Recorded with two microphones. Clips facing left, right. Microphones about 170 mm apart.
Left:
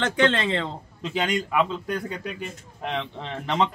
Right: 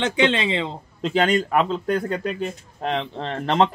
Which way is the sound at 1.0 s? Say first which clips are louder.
Right 6 dB; 60° right (ahead or behind).